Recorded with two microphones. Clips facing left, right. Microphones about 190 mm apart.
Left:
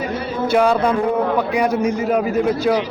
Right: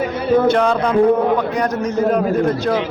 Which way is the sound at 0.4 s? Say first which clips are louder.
Even; 10° left (ahead or behind).